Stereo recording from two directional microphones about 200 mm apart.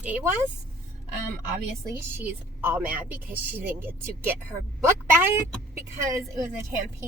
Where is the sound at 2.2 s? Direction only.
10° right (ahead or behind).